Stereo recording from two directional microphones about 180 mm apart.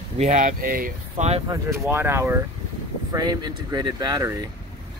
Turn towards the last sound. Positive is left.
turn(degrees=-20)  # may be behind; listen again after turning